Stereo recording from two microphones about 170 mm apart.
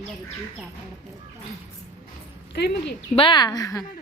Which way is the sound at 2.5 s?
80° left.